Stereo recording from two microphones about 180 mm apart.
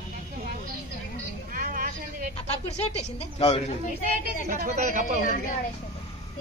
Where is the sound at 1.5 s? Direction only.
50° right (ahead or behind).